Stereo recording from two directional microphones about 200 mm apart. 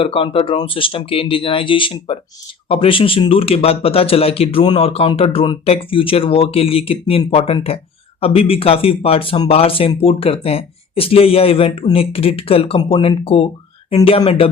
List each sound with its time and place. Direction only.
0.0 s speech: 25° left (ahead or behind)